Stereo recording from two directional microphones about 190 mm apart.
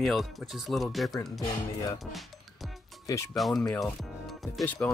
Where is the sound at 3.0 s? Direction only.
15° left (ahead or behind).